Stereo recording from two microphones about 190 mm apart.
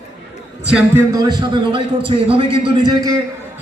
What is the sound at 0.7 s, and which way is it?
Speech, 5° right (ahead or behind).